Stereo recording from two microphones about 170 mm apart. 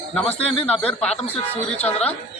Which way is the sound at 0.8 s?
40° left (ahead or behind).